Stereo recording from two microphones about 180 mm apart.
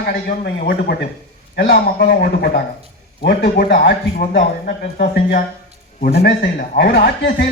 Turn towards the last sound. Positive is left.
turn(degrees=60)  # may be behind; listen again after turning